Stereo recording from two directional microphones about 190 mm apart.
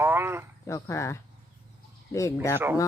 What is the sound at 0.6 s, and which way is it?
Speech, 15° left (ahead or behind).